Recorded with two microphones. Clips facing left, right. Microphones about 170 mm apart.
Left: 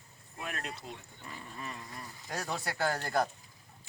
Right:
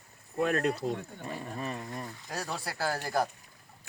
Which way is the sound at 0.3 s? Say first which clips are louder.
Right 13 dB; 55° right (ahead or behind).